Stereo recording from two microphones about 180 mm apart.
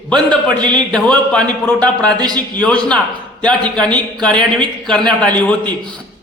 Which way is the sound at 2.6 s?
5° left (ahead or behind).